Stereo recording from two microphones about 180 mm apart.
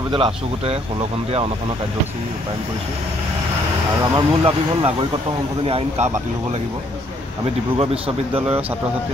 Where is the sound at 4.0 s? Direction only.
30° right (ahead or behind).